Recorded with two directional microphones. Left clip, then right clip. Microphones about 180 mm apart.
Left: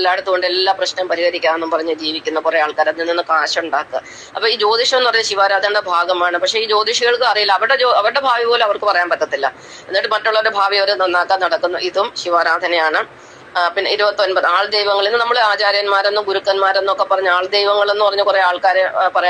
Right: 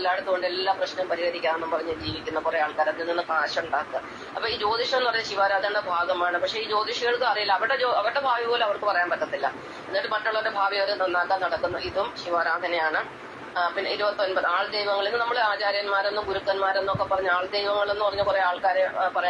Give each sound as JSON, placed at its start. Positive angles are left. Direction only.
{"t": 0.0, "sound": "a man's voice", "side_deg": 45}